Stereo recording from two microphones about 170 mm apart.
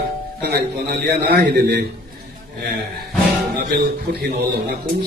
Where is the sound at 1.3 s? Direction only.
70° right (ahead or behind).